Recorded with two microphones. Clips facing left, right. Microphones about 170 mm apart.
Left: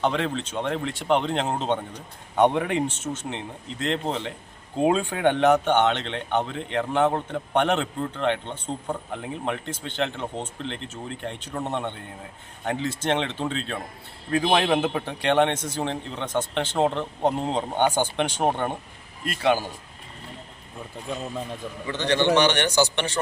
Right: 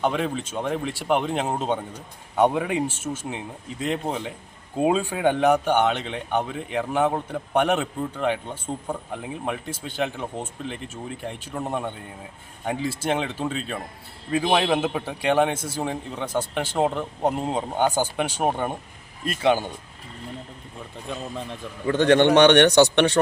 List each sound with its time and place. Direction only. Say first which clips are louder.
0.0 s speech: even; 5° right (ahead or behind)
19.4 s speech: right 1 dB; 20° right (ahead or behind)
21.1 s speech: left 1 dB; centre (ahead or behind)
21.8 s a man's voice: right 5 dB; 50° right (ahead or behind)